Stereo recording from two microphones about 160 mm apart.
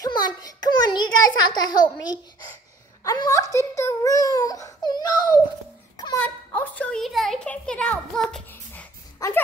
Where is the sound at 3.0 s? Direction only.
20° left (ahead or behind).